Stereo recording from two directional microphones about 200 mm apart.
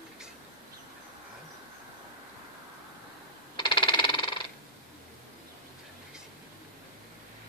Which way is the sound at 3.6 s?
25° left (ahead or behind).